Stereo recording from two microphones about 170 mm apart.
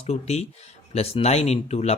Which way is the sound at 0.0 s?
40° left (ahead or behind).